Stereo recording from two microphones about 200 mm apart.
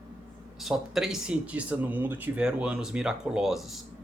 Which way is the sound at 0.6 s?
Centre (ahead or behind).